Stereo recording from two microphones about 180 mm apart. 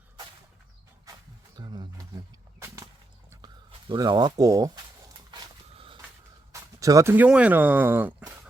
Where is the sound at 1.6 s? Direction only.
25° right (ahead or behind).